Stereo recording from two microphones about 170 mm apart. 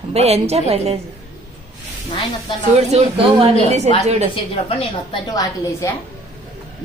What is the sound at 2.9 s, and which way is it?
Speech, 35° right (ahead or behind).